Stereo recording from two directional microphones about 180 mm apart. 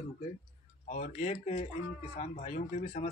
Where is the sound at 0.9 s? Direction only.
40° left (ahead or behind).